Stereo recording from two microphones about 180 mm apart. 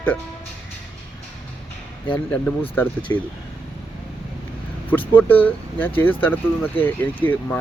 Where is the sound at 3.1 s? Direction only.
15° left (ahead or behind).